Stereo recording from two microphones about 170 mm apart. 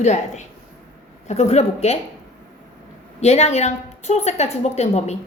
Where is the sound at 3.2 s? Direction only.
40° left (ahead or behind).